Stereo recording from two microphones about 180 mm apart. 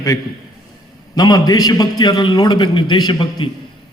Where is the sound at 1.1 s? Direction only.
20° left (ahead or behind).